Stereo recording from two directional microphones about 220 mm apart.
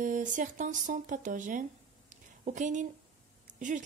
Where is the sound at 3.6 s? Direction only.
35° right (ahead or behind).